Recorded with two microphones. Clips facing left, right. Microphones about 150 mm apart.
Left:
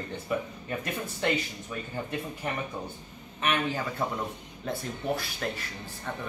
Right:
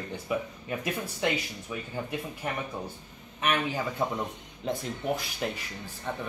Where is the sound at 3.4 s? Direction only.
10° right (ahead or behind).